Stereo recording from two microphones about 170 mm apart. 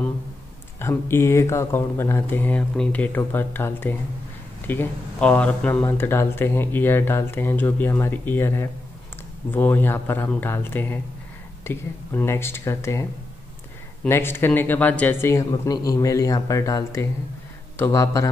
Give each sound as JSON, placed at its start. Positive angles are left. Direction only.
{"t": 0.7, "sound": "speech", "side_deg": 15}
{"t": 14.0, "sound": "speech", "side_deg": 15}